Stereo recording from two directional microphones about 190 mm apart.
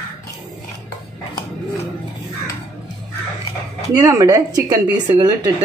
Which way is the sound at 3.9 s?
15° right (ahead or behind).